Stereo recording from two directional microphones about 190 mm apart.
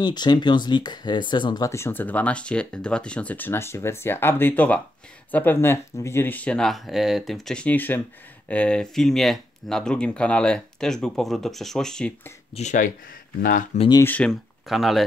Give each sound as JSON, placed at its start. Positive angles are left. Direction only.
{"t": 0.0, "sound": "speech", "side_deg": 20}
{"t": 12.5, "sound": "speech", "side_deg": 40}
{"t": 13.7, "sound": "speech", "side_deg": 20}
{"t": 14.0, "sound": "speech", "side_deg": 5}